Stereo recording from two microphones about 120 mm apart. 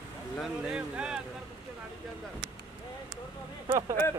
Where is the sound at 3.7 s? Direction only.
30° right (ahead or behind).